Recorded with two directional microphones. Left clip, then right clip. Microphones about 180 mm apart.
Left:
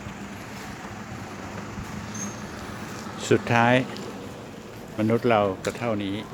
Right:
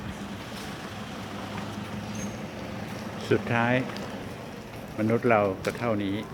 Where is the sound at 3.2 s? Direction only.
50° left (ahead or behind).